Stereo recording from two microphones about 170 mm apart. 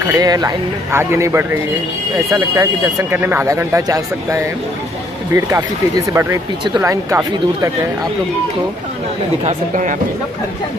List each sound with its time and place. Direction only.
0.0 s speech: 15° right (ahead or behind)
9.4 s speech: 45° right (ahead or behind)